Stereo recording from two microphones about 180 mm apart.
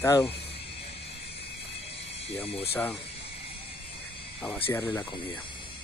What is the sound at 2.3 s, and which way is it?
Speech, 35° left (ahead or behind).